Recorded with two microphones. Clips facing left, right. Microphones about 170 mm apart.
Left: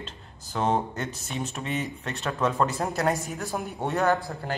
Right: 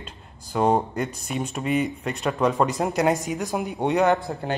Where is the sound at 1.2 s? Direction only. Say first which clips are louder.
Right 5 dB; 10° right (ahead or behind).